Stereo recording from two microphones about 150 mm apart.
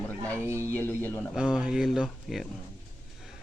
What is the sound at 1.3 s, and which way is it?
A man's voice, 5° right (ahead or behind).